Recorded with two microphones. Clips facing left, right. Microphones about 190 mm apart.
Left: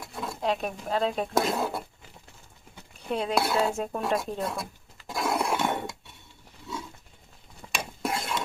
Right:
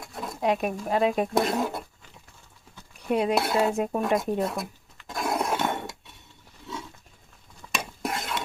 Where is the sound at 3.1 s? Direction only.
5° right (ahead or behind).